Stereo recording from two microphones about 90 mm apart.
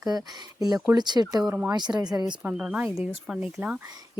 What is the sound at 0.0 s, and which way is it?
Speech, 45° right (ahead or behind).